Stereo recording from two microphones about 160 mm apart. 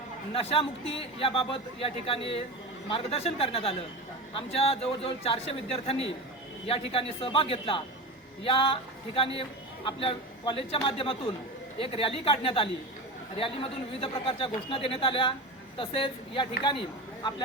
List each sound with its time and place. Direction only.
0.4 s a man's voice: 35° left (ahead or behind)